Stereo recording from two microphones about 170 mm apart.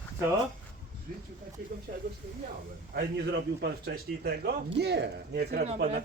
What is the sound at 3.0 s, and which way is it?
A man's voice, 85° right.